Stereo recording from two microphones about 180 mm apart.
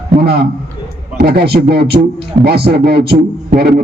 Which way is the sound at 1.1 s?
60° right (ahead or behind).